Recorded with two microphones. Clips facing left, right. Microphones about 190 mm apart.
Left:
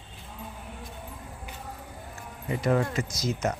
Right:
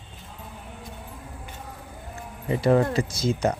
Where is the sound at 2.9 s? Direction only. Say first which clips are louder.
Right 5 dB; 30° right (ahead or behind).